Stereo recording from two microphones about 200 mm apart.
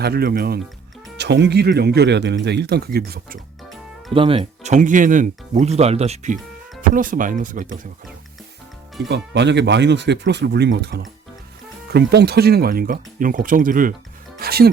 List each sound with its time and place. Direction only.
0.0 s speech: 50° right (ahead or behind)
4.1 s speech: 25° right (ahead or behind)
9.0 s speech: 60° right (ahead or behind)